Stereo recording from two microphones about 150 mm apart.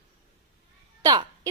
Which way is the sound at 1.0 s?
25° right (ahead or behind).